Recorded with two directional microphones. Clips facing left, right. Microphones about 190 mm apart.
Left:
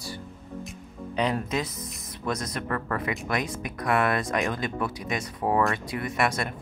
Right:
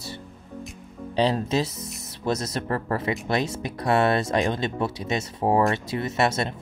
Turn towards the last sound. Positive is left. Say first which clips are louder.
# right 3 dB
turn(degrees=-25)  # may be behind; listen again after turning